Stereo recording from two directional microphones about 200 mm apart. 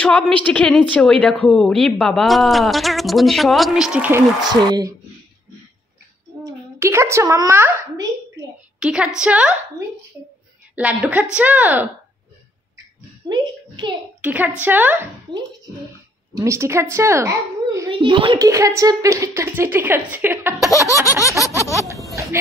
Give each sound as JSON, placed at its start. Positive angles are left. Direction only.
{"t": 0.0, "sound": "a woman's voice", "side_deg": 5}
{"t": 4.4, "sound": "speech", "side_deg": -20}
{"t": 6.4, "sound": "a woman's voice", "side_deg": -15}
{"t": 8.7, "sound": "a woman's voice", "side_deg": -5}
{"t": 10.8, "sound": "a woman's voice", "side_deg": -5}
{"t": 13.3, "sound": "a sound", "side_deg": -20}
{"t": 14.2, "sound": "a woman's voice", "side_deg": -10}
{"t": 15.3, "sound": "a woman's voice", "side_deg": -25}
{"t": 17.9, "sound": "a woman's voice", "side_deg": -25}
{"t": 21.0, "sound": "a sound", "side_deg": 15}